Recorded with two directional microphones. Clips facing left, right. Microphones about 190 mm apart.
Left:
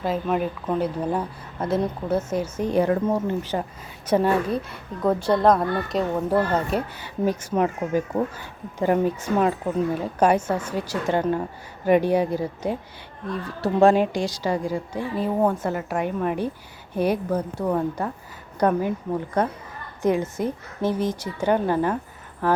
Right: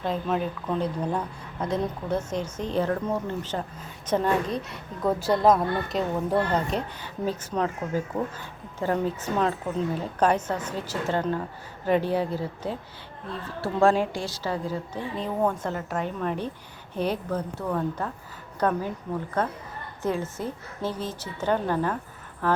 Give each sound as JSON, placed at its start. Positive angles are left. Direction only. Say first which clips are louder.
{"t": 0.0, "sound": "a woman's voice", "louder": "left 3 dB", "side_deg": 5}